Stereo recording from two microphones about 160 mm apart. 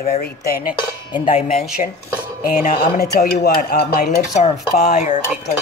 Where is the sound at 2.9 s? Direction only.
80° left; by 5.3 s 50° left (ahead or behind).